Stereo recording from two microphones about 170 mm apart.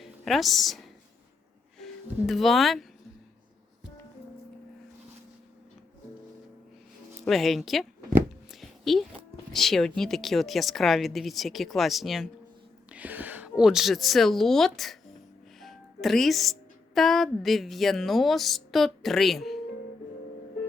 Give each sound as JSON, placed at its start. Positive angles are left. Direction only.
{"t": 0.0, "sound": "a woman's voice", "side_deg": 0}
{"t": 1.8, "sound": "speech", "side_deg": 0}
{"t": 7.3, "sound": "a woman's voice", "side_deg": 0}
{"t": 8.4, "sound": "a sound", "side_deg": 0}
{"t": 9.5, "sound": "a woman's voice", "side_deg": 0}